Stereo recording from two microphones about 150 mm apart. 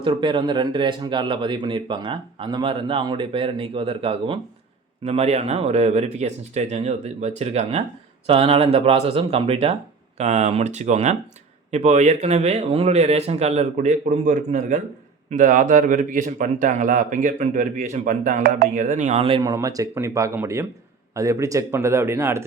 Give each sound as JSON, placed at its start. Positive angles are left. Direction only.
{"t": 0.0, "sound": "a man's voice", "side_deg": -35}
{"t": 19.4, "sound": "speech", "side_deg": -25}